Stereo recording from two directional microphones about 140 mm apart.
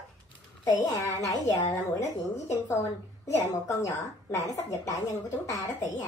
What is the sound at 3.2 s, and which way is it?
A woman's voice, 20° left (ahead or behind).